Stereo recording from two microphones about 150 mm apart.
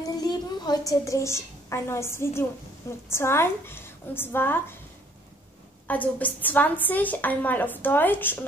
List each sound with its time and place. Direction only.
0.0 s a woman's voice: 25° left (ahead or behind)
5.9 s a woman's voice: 10° left (ahead or behind)